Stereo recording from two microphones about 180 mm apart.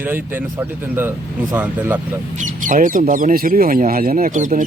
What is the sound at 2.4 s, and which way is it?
Speech, 45° right (ahead or behind).